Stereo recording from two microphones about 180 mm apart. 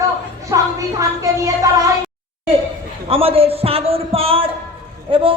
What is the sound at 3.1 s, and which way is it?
A man's voice, 30° right (ahead or behind).